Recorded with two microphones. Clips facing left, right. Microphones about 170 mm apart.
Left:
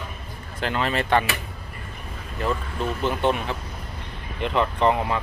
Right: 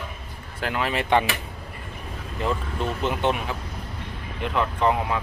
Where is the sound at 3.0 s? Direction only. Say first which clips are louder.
Left 2 dB; 20° right (ahead or behind).